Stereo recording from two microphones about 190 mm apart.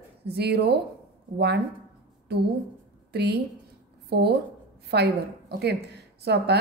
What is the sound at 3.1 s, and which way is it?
Speech, 60° right (ahead or behind).